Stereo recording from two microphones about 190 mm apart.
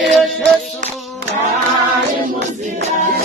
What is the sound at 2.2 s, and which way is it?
Music, 40° right (ahead or behind).